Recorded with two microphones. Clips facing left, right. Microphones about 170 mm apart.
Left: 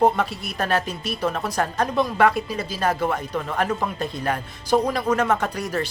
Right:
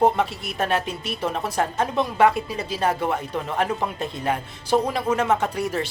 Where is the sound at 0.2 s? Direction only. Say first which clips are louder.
Right 1 dB; 25° right (ahead or behind).